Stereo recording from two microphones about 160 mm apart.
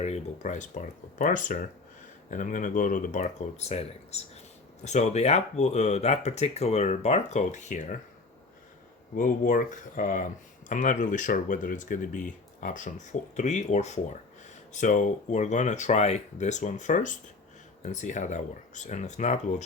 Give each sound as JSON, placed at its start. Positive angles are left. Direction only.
{"t": 0.0, "sound": "speech", "side_deg": 45}
{"t": 9.1, "sound": "speech", "side_deg": 55}